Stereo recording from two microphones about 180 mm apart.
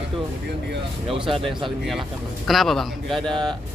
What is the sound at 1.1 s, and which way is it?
Speech, 30° right (ahead or behind).